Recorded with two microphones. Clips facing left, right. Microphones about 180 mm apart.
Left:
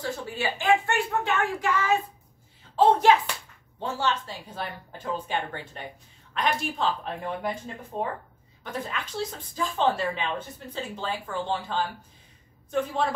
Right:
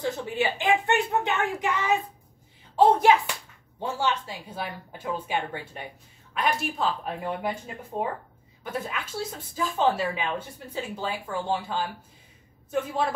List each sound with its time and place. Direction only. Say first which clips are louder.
0.2 s a woman's voice: right 3 dB; 20° right (ahead or behind)
2.7 s a sound: even; 10° right (ahead or behind)
3.8 s speech: right 1 dB; 10° right (ahead or behind)